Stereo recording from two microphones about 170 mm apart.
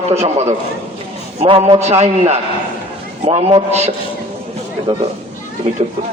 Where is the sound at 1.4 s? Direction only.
30° right (ahead or behind).